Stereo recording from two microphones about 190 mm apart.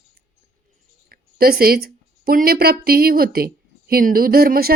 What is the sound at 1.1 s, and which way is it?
A woman's voice, 50° right (ahead or behind).